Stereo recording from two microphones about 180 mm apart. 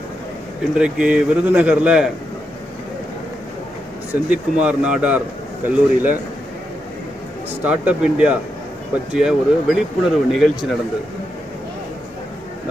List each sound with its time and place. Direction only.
0.8 s speech: 5° right (ahead or behind)
4.1 s speech: 5° right (ahead or behind)
7.6 s speech: 5° right (ahead or behind)